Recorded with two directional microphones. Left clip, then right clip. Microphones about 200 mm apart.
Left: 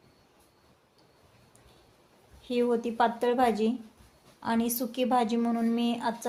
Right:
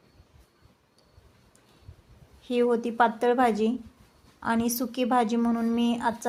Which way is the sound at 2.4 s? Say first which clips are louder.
Right 3 dB; 15° right (ahead or behind).